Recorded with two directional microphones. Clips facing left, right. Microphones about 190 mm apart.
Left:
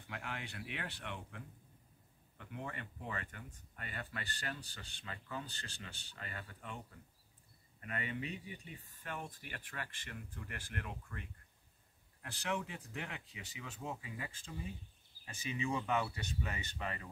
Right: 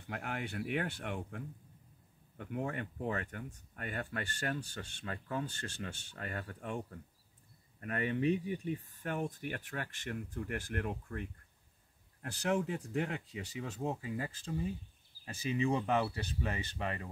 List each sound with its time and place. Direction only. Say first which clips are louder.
0.1 s speech: right 6 dB; 50° right (ahead or behind)